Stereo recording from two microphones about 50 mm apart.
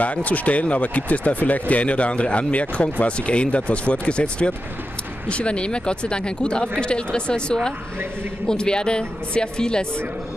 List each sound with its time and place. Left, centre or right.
0.0 s speech: left